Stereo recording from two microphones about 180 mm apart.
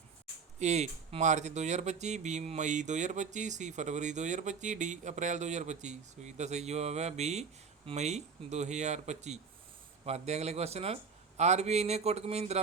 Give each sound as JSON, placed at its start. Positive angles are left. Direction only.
{"t": 0.6, "sound": "speech", "side_deg": -40}